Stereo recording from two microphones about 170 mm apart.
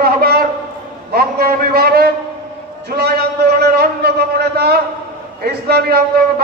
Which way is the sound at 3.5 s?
65° right (ahead or behind).